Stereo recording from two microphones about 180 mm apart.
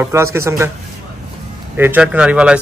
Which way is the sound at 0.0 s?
15° right (ahead or behind).